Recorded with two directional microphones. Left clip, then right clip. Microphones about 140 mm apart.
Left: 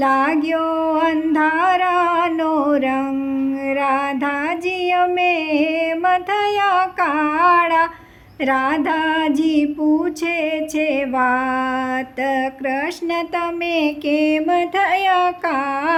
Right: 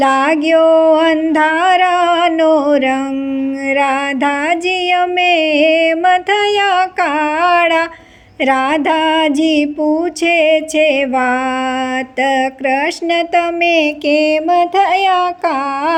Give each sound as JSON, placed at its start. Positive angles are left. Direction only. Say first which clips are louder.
{"t": 0.0, "sound": "music", "louder": "right 5 dB", "side_deg": -25}